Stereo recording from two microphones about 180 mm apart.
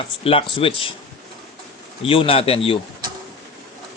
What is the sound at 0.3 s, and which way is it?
Speech, 30° left (ahead or behind).